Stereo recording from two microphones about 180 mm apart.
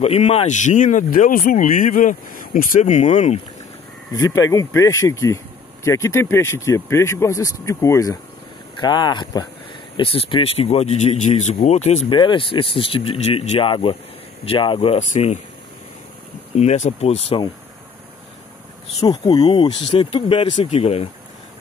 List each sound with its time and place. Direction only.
0.0 s speech: 35° left (ahead or behind)
4.1 s speech: 15° left (ahead or behind); by 12.0 s 40° left (ahead or behind)
12.1 s speech: 25° left (ahead or behind)
16.5 s speech: 40° left (ahead or behind)
19.0 s speech: 25° left (ahead or behind)